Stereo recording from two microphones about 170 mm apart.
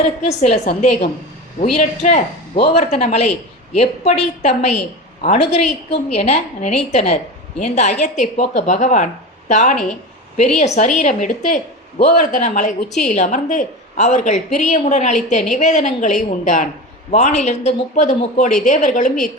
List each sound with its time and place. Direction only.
0.3 s a woman's voice: 40° left (ahead or behind)